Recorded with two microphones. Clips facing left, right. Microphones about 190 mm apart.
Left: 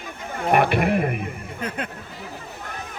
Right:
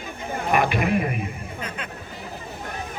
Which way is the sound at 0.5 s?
60° left (ahead or behind).